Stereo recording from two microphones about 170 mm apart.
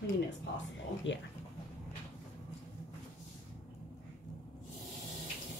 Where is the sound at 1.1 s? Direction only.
90° left.